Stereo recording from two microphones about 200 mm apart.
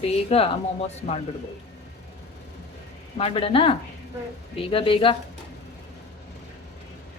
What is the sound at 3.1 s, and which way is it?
Speech, 30° left (ahead or behind).